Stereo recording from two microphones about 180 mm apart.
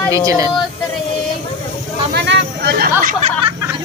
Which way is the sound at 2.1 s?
65° right (ahead or behind).